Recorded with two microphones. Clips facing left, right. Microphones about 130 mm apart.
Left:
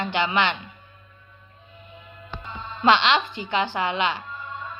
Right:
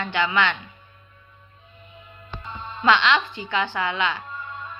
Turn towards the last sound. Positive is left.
turn(degrees=20)  # may be behind; listen again after turning